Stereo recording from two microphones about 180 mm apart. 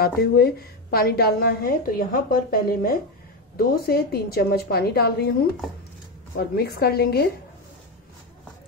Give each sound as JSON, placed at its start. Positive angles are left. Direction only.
{"t": 0.0, "sound": "a woman's voice", "side_deg": 60}
{"t": 6.3, "sound": "a woman's voice", "side_deg": 60}